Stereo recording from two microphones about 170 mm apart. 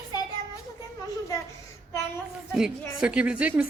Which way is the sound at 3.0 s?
5° right (ahead or behind).